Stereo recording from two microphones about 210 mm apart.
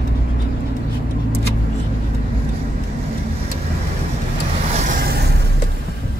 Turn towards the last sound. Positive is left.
turn(degrees=-45)  # may be behind; listen again after turning